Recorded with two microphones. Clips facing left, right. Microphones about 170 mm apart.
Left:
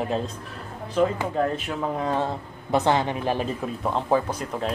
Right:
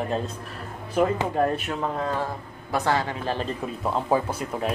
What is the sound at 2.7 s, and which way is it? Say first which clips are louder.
Speech: left 3 dB; 20° left (ahead or behind).